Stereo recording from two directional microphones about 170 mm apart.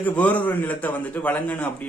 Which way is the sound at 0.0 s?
10° left (ahead or behind).